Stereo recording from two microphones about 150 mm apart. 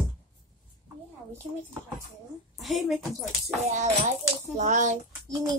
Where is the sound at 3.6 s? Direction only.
50° right (ahead or behind).